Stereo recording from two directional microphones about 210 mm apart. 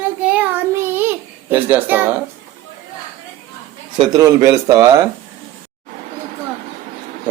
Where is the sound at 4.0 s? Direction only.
20° right (ahead or behind).